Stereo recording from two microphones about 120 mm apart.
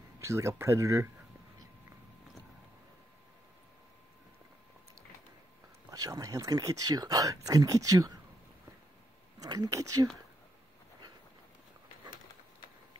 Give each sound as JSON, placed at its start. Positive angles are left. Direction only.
{"t": 0.2, "sound": "speech", "side_deg": -25}
{"t": 5.9, "sound": "speech", "side_deg": -30}
{"t": 9.4, "sound": "speech", "side_deg": -30}